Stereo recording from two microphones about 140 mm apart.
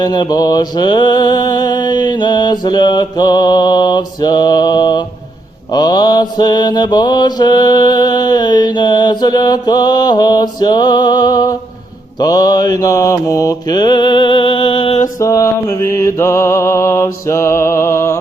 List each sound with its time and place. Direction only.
0.0 s mantra: 30° left (ahead or behind)
15.2 s mantra: 25° left (ahead or behind)